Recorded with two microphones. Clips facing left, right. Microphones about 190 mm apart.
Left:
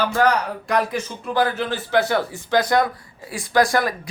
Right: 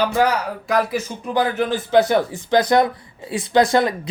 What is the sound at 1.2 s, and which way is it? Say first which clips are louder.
Speech: right 1 dB; 15° right (ahead or behind).